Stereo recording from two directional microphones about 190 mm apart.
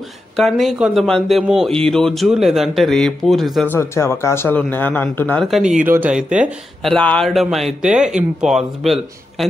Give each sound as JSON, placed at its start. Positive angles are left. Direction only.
{"t": 0.4, "sound": "speech", "side_deg": 0}
{"t": 3.6, "sound": "speech", "side_deg": 15}